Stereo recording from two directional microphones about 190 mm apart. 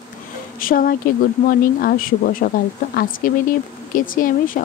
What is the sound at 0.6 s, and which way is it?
Speech, 50° left (ahead or behind).